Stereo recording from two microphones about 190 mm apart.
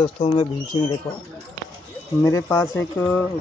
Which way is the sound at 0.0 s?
25° left (ahead or behind).